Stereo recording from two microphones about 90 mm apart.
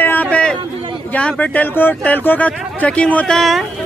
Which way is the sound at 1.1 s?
15° left (ahead or behind).